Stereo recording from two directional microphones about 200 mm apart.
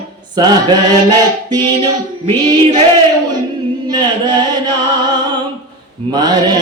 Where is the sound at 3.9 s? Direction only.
20° right (ahead or behind).